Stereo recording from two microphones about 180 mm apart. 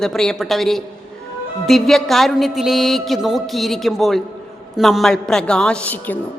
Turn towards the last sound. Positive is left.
turn(degrees=10)  # may be behind; listen again after turning